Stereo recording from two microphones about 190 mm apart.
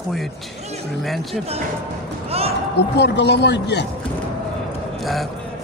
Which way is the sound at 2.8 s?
60° left (ahead or behind).